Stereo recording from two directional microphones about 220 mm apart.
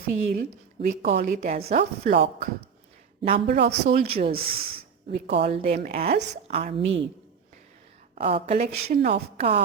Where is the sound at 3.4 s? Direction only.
45° right (ahead or behind).